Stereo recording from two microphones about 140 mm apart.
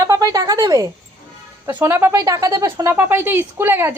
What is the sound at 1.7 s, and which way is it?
Speech, 15° right (ahead or behind).